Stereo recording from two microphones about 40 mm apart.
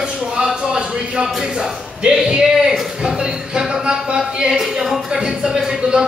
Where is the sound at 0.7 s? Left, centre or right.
Centre.